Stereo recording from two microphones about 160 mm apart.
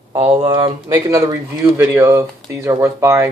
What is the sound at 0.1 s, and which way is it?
Speech, 35° right (ahead or behind).